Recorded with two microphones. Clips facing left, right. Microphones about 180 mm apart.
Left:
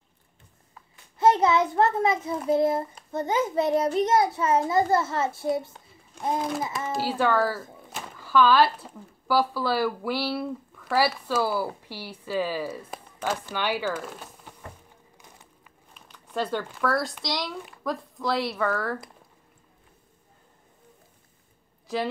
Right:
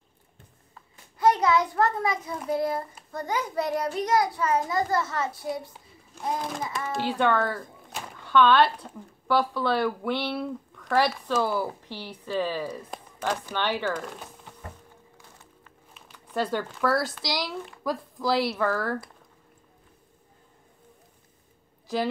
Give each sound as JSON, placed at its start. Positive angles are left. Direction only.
{"t": 1.2, "sound": "a child's voice", "side_deg": 25}
{"t": 6.9, "sound": "speech", "side_deg": 5}
{"t": 15.9, "sound": "speech", "side_deg": -5}
{"t": 21.9, "sound": "a woman's voice", "side_deg": 0}